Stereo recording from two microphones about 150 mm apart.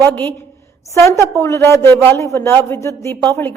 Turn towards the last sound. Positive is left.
turn(degrees=20)  # may be behind; listen again after turning